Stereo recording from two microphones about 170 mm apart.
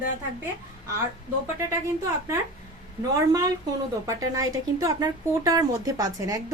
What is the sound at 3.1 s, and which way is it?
Speech, 20° right (ahead or behind).